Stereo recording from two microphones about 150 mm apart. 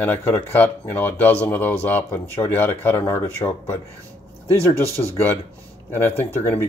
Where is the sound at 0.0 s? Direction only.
15° left (ahead or behind).